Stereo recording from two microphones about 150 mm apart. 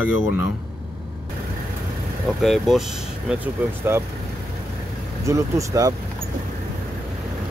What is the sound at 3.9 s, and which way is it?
Speech, 15° right (ahead or behind).